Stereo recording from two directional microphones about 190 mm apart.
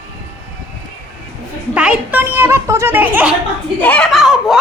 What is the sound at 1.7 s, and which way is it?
Speech, 5° right (ahead or behind).